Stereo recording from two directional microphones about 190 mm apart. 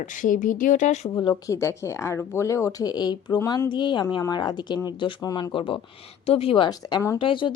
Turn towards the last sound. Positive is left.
turn(degrees=25)  # may be behind; listen again after turning